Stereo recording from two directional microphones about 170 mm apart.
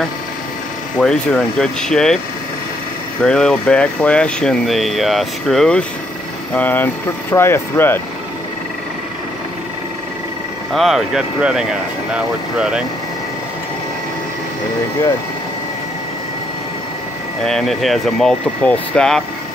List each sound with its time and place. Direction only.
0.9 s speech: 5° left (ahead or behind)
3.2 s speech: 5° left (ahead or behind)
10.7 s speech: centre (ahead or behind)
17.4 s speech: centre (ahead or behind)